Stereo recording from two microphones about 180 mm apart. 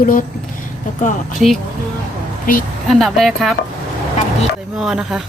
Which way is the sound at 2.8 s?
Centre (ahead or behind).